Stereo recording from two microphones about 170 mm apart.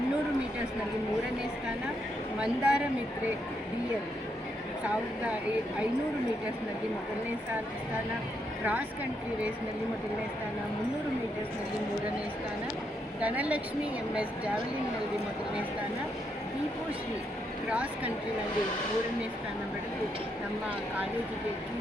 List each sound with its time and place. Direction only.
2.4 s speech: 5° right (ahead or behind)
13.1 s speech: 10° right (ahead or behind)
17.7 s speech: 10° right (ahead or behind)